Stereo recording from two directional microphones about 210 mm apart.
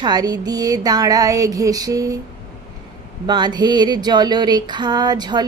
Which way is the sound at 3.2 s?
20° right (ahead or behind).